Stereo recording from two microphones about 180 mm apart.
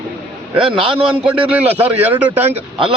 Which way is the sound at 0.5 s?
30° right (ahead or behind).